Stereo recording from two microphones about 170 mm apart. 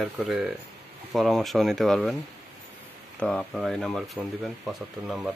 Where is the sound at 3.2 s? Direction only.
5° left (ahead or behind).